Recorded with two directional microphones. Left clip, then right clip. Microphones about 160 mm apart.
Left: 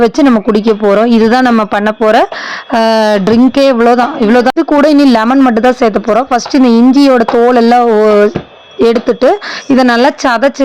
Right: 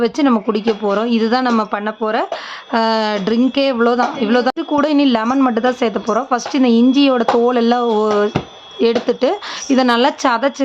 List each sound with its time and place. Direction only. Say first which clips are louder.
0.0 s a woman's voice: left 7 dB; 40° left (ahead or behind)